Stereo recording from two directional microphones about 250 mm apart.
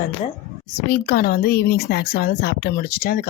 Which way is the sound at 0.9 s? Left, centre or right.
Left.